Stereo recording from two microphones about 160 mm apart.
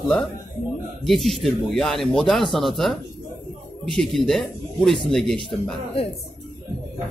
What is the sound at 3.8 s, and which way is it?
Speech, centre (ahead or behind).